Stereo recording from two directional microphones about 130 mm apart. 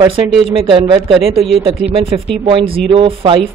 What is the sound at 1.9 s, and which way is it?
Speech, 45° right (ahead or behind).